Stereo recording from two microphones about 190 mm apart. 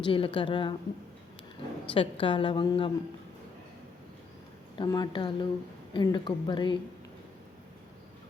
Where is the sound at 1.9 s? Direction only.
30° left (ahead or behind).